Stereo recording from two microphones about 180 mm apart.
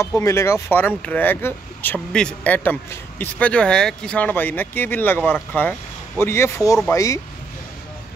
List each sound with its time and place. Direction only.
0.0 s speech: 15° left (ahead or behind)